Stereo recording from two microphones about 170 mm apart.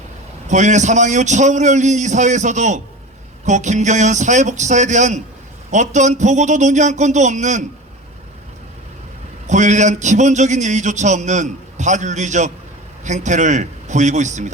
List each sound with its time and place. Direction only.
0.4 s speech: 45° right (ahead or behind)
9.5 s speech: 45° right (ahead or behind)